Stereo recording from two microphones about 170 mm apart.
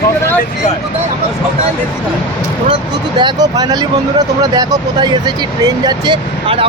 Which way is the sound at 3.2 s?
25° right (ahead or behind).